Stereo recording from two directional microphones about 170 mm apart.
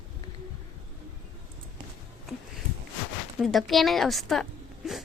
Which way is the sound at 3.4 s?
Centre (ahead or behind).